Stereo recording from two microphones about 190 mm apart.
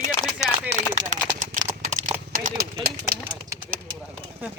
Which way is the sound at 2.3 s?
50° right (ahead or behind).